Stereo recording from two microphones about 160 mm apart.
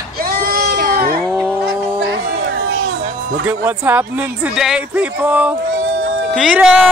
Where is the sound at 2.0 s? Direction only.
90° right.